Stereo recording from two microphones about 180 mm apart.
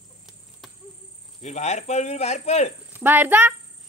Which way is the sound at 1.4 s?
40° left (ahead or behind).